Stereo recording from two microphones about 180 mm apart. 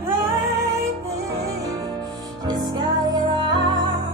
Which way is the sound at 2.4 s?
25° right (ahead or behind).